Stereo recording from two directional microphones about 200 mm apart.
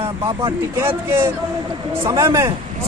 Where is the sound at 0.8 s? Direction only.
15° right (ahead or behind).